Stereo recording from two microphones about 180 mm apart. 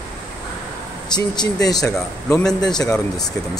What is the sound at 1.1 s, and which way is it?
Speech, 25° left (ahead or behind).